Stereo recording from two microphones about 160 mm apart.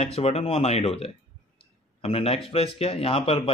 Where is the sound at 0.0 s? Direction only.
40° left (ahead or behind).